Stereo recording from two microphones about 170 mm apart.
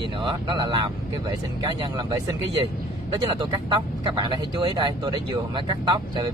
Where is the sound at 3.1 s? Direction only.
30° right (ahead or behind).